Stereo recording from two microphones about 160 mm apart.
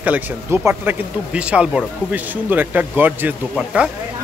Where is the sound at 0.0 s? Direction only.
10° right (ahead or behind).